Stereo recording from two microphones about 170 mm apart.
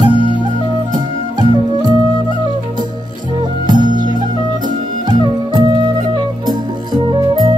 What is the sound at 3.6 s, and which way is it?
Music, 25° right (ahead or behind).